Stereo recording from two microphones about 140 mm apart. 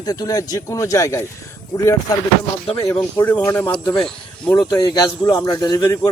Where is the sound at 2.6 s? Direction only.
40° left (ahead or behind).